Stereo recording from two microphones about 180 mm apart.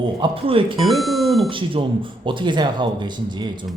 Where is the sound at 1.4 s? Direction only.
30° right (ahead or behind).